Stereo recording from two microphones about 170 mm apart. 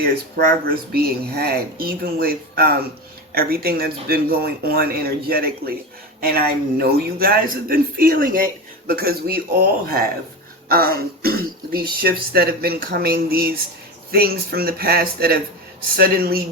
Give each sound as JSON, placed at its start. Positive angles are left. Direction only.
{"t": 0.9, "sound": "speech", "side_deg": -65}